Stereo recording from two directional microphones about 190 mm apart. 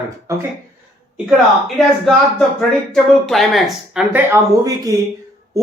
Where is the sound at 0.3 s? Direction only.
15° right (ahead or behind).